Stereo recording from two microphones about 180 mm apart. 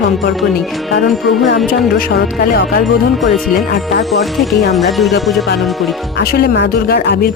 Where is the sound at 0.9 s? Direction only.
Centre (ahead or behind).